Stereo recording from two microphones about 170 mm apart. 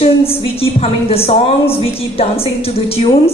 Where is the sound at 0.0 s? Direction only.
35° left (ahead or behind).